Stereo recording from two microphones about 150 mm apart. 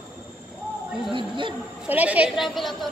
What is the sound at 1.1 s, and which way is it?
Speech, 35° right (ahead or behind).